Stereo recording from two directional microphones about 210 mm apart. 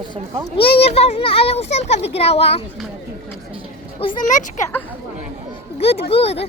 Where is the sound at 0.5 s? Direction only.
25° left (ahead or behind).